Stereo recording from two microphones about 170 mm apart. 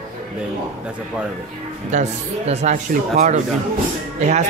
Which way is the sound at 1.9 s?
45° right (ahead or behind).